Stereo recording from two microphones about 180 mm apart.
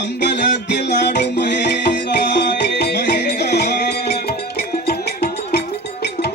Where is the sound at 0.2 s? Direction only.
70° left (ahead or behind).